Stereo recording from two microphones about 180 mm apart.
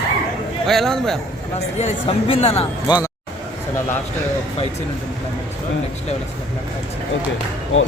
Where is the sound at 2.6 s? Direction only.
25° left (ahead or behind).